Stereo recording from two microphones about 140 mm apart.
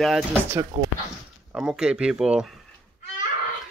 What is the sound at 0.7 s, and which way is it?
Speech, 50° right (ahead or behind).